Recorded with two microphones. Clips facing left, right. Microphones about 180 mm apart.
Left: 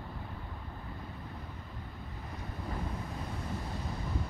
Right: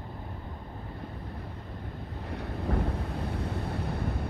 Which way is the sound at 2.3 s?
65° right (ahead or behind).